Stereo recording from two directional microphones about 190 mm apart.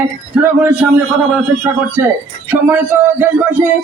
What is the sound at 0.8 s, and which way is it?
Speech, 5° right (ahead or behind).